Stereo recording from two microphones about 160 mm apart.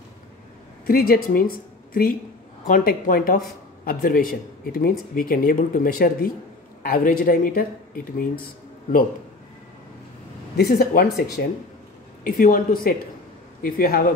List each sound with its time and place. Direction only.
0.8 s speech: 70° left (ahead or behind)
2.6 s speech: 60° left (ahead or behind)
10.5 s speech: 80° left
11.4 s speech: 90° left
12.3 s speech: 60° left (ahead or behind)